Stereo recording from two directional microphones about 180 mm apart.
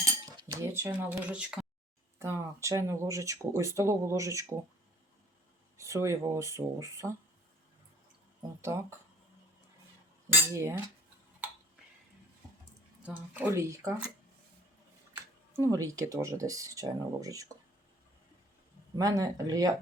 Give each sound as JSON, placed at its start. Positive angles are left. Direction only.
{"t": 0.3, "sound": "speech", "side_deg": -20}
{"t": 5.7, "sound": "speech", "side_deg": -15}
{"t": 8.6, "sound": "speech", "side_deg": -15}
{"t": 10.5, "sound": "speech", "side_deg": -15}
{"t": 13.1, "sound": "speech", "side_deg": -10}
{"t": 15.1, "sound": "speech", "side_deg": -15}
{"t": 18.9, "sound": "speech", "side_deg": -20}